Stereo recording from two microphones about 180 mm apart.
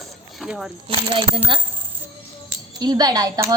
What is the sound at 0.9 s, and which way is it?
Speech, 30° right (ahead or behind).